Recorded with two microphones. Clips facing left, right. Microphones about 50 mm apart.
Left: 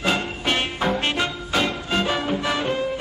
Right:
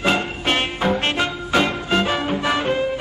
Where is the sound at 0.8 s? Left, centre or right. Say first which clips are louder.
Right 2 dB; centre.